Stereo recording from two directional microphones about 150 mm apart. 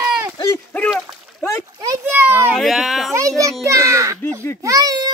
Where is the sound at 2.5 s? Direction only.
Centre (ahead or behind).